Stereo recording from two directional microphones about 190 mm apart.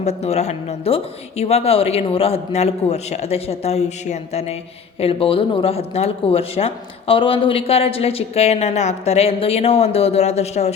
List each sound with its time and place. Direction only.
0.0 s speech: 35° left (ahead or behind)